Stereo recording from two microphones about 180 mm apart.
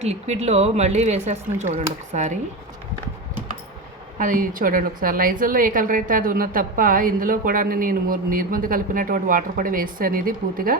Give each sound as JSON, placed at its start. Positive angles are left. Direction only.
{"t": 0.0, "sound": "speech", "side_deg": -35}
{"t": 4.2, "sound": "a woman's voice", "side_deg": -50}